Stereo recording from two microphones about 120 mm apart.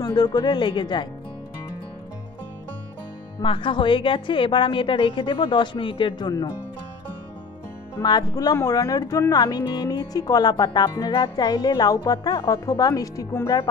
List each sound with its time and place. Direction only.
0.0 s speech: 35° left (ahead or behind)
3.4 s a woman's voice: 45° left (ahead or behind)
8.0 s speech: 35° left (ahead or behind)